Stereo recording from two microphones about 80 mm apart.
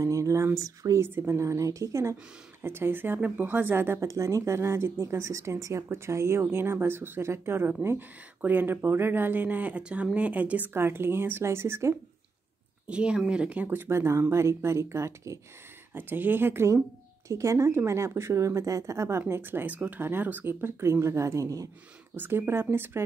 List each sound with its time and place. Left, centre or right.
0.0 s a sound: right
0.6 s speech: right
1.0 s speech: right
4.0 s speech: right
12.8 s speech: centre; by 15.3 s right
15.9 s speech: right
22.1 s speech: right